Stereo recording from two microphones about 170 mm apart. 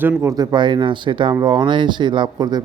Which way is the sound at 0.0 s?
15° right (ahead or behind).